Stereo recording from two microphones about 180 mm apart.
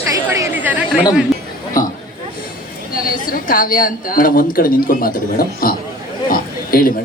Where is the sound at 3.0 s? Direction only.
50° left (ahead or behind).